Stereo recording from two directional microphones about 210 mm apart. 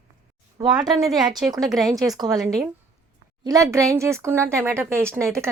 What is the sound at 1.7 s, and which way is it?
Speech, 15° right (ahead or behind).